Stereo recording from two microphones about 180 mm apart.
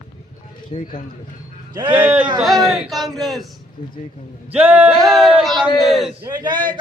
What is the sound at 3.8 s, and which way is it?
Speech, 45° left (ahead or behind).